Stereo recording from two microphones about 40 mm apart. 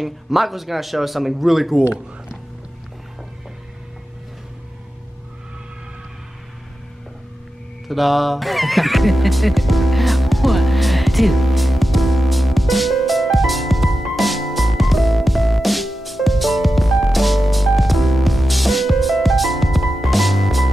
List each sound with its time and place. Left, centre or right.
0.0 s a man's voice: centre
1.8 s speech: centre
7.9 s music: centre